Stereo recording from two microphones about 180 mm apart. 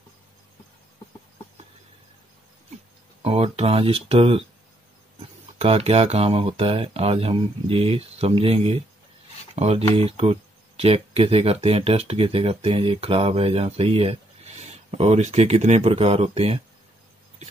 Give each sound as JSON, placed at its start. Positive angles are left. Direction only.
{"t": 3.2, "sound": "speech", "side_deg": -30}
{"t": 5.6, "sound": "speech", "side_deg": -35}